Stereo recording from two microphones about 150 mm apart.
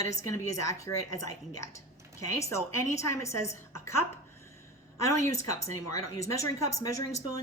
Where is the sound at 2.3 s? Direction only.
20° left (ahead or behind).